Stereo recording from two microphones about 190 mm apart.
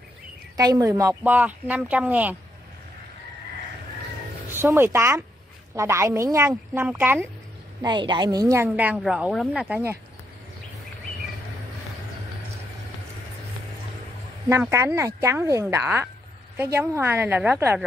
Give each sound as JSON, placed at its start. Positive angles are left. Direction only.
{"t": 0.6, "sound": "a woman's voice", "side_deg": -20}
{"t": 4.5, "sound": "a woman's voice", "side_deg": -10}
{"t": 7.8, "sound": "a woman's voice", "side_deg": -25}
{"t": 14.5, "sound": "a woman's voice", "side_deg": -15}